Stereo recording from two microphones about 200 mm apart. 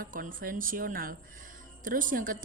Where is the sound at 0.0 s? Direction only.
45° right (ahead or behind).